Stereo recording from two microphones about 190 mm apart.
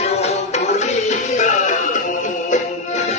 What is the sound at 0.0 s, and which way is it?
Music, 35° left (ahead or behind).